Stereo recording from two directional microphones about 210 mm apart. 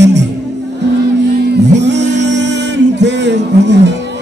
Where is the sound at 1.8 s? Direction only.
55° right (ahead or behind).